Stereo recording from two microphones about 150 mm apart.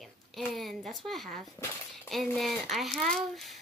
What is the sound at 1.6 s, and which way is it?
Speech, 25° left (ahead or behind).